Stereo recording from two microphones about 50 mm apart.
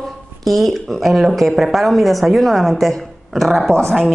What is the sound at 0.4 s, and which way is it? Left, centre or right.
A woman's voice, centre.